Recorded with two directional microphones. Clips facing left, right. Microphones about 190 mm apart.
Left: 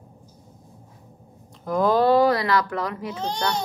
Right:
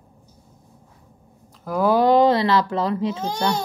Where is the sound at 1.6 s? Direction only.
10° right (ahead or behind); by 3.2 s 25° right (ahead or behind).